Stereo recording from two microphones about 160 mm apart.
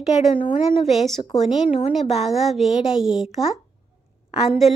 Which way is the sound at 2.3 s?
Centre (ahead or behind).